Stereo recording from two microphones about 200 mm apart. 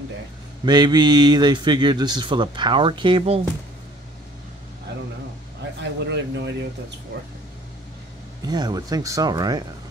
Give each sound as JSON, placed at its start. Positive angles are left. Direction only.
{"t": 0.7, "sound": "speech", "side_deg": -20}
{"t": 5.8, "sound": "speech", "side_deg": -60}
{"t": 8.5, "sound": "speech", "side_deg": -20}